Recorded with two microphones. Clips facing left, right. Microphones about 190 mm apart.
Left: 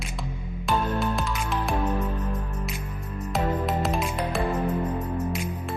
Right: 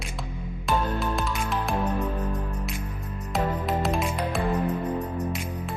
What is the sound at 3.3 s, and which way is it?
Music, centre (ahead or behind).